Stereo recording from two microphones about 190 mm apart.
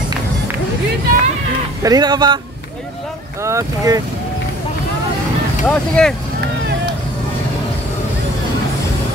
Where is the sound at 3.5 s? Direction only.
15° right (ahead or behind).